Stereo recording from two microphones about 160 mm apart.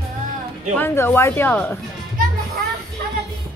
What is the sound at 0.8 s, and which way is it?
Speech, 15° left (ahead or behind).